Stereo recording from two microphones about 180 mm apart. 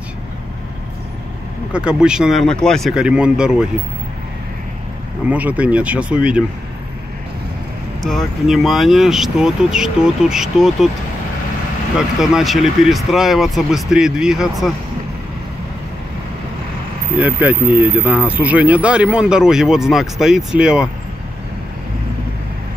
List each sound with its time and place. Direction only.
1.7 s speech: 5° right (ahead or behind)
5.2 s speech: 10° right (ahead or behind)
8.0 s speech: centre (ahead or behind)
12.2 s speech: centre (ahead or behind)
17.2 s speech: 10° right (ahead or behind)